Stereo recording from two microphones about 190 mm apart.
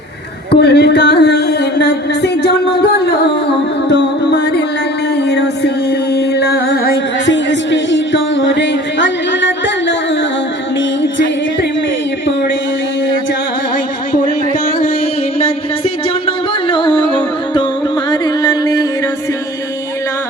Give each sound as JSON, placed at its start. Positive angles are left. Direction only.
{"t": 0.6, "sound": "music", "side_deg": 60}
{"t": 15.4, "sound": "music", "side_deg": 30}